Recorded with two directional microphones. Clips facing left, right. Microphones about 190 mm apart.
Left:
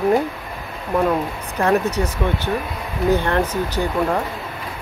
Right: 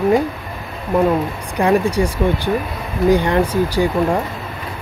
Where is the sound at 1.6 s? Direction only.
10° right (ahead or behind).